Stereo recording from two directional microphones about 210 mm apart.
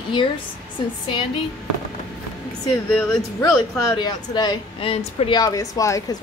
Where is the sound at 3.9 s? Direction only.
20° left (ahead or behind).